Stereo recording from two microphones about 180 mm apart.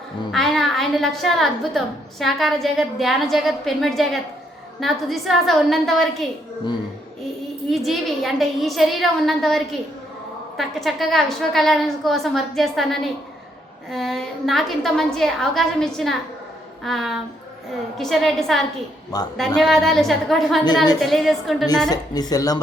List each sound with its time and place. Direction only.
0.3 s a woman's voice: centre (ahead or behind)
7.7 s a woman's voice: centre (ahead or behind)
19.1 s speech: 20° left (ahead or behind)
19.5 s a woman's voice: centre (ahead or behind)
21.8 s speech: 20° left (ahead or behind)